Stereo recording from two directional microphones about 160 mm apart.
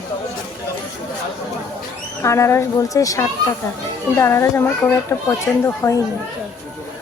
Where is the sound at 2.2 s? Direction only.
20° left (ahead or behind).